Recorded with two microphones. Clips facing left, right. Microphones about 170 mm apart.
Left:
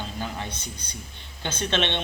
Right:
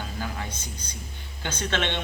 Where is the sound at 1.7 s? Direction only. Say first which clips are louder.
Left 2 dB; 20° left (ahead or behind).